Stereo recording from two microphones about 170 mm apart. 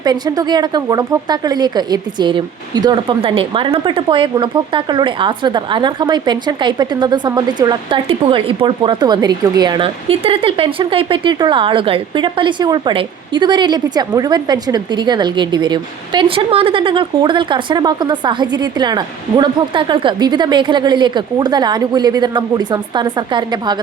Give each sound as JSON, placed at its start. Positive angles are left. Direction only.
{"t": 0.0, "sound": "speech", "side_deg": -25}